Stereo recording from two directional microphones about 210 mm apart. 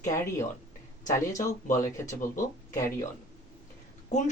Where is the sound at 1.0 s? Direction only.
15° left (ahead or behind).